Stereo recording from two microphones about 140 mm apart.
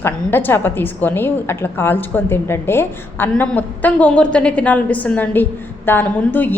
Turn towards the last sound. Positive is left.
turn(degrees=10)  # may be behind; listen again after turning